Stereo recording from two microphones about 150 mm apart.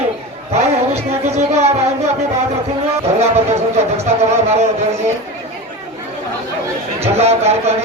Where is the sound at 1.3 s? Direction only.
45° right (ahead or behind).